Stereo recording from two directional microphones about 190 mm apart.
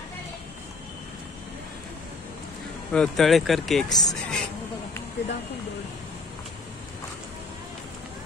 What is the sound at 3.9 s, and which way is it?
Speech, 20° left (ahead or behind).